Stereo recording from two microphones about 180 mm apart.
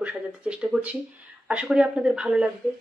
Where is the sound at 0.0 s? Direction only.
5° right (ahead or behind).